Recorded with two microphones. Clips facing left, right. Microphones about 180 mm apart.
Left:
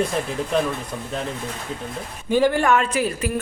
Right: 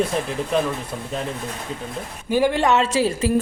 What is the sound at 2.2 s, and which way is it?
Speech, 10° right (ahead or behind).